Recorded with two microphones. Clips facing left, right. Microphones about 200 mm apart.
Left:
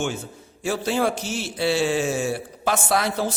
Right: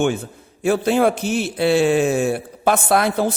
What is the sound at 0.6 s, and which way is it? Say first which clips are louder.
A man's voice: right 6 dB; 55° right (ahead or behind).